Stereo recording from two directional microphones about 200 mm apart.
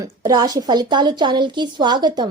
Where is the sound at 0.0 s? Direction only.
20° right (ahead or behind).